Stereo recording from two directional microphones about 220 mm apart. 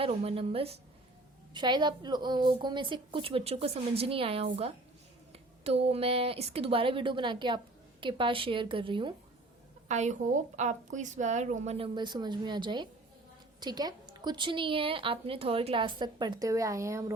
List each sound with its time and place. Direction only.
0.0 s a woman's voice: 30° right (ahead or behind)
9.9 s a woman's voice: 35° right (ahead or behind); by 17.2 s 15° right (ahead or behind)